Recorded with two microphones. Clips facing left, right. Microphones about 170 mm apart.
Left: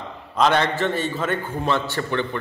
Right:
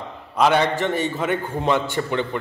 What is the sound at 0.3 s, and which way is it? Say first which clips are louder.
A man's voice: right 1 dB; 10° right (ahead or behind).